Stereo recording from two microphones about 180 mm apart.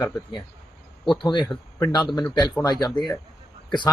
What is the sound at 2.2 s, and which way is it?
Speech, 5° left (ahead or behind).